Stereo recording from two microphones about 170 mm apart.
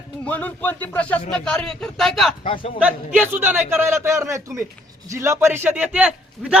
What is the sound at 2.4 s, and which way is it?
Speech, 30° left (ahead or behind).